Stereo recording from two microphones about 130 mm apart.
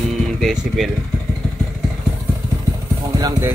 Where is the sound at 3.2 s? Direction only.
25° right (ahead or behind).